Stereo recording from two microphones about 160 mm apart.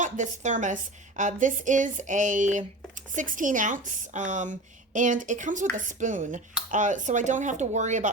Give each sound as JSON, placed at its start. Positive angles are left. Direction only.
{"t": 0.0, "sound": "a woman's voice", "side_deg": -50}